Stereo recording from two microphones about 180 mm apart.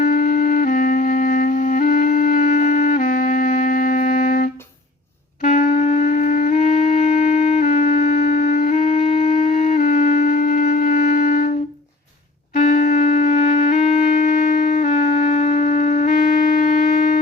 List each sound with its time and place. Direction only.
0.0 s music: 45° left (ahead or behind)
12.5 s music: 40° left (ahead or behind)